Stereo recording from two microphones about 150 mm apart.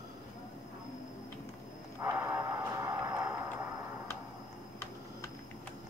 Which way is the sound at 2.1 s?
20° right (ahead or behind).